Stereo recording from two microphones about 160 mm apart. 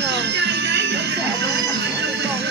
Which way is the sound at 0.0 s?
90° right.